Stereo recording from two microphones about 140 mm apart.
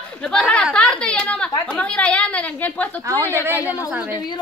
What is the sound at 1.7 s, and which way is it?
A woman's voice, 10° left (ahead or behind).